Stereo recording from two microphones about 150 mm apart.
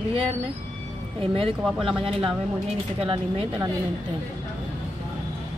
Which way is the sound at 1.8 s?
5° right (ahead or behind).